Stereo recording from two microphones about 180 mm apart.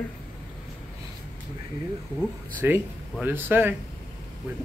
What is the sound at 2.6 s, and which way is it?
Speech, 10° right (ahead or behind).